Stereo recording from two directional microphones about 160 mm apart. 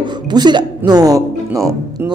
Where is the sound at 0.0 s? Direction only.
25° right (ahead or behind).